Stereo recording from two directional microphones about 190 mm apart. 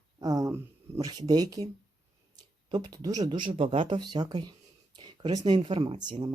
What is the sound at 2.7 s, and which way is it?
Speech, 20° right (ahead or behind).